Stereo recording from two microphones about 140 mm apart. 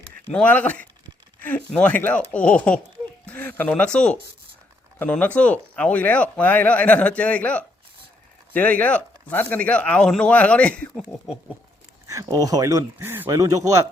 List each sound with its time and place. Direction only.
0.3 s speech: 10° left (ahead or behind)
12.0 s speech: 25° right (ahead or behind)